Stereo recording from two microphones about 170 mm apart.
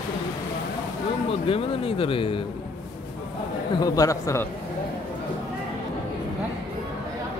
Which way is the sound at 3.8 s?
20° left (ahead or behind).